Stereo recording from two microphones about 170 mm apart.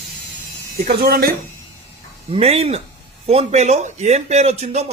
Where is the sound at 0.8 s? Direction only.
65° right (ahead or behind).